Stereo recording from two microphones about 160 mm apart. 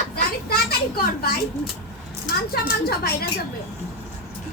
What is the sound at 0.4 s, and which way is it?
Children playing, 75° left (ahead or behind).